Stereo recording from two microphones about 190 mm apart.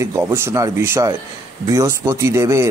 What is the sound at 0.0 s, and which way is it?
A man's voice, 10° right (ahead or behind).